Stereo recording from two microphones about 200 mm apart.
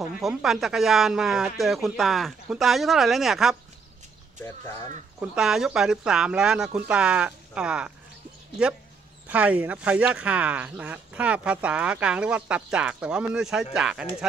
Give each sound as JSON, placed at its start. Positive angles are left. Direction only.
{"t": 0.2, "sound": "speech", "side_deg": 0}
{"t": 4.4, "sound": "speech", "side_deg": 15}
{"t": 5.2, "sound": "speech", "side_deg": -5}
{"t": 9.3, "sound": "speech", "side_deg": -5}